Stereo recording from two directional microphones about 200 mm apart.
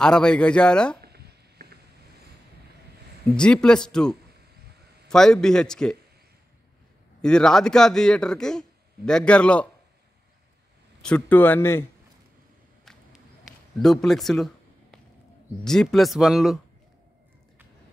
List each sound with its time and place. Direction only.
0.0 s a man's voice: 5° left (ahead or behind)
1.0 s a sound: 50° right (ahead or behind)
3.3 s a man's voice: 5° left (ahead or behind)
7.2 s a man's voice: 5° left (ahead or behind)
11.0 s speech: 5° left (ahead or behind)
13.7 s a man's voice: centre (ahead or behind)